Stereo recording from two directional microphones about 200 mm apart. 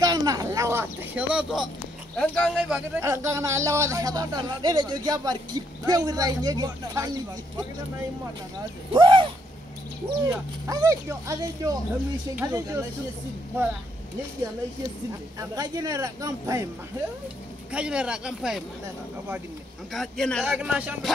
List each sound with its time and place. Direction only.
0.0 s a sound: 20° right (ahead or behind)
2.1 s speech: 5° left (ahead or behind)
3.0 s speech: 15° right (ahead or behind)
8.9 s speech: 25° right (ahead or behind)
15.3 s speech: 20° right (ahead or behind)
17.6 s speech: 5° right (ahead or behind)
19.9 s speech: centre (ahead or behind)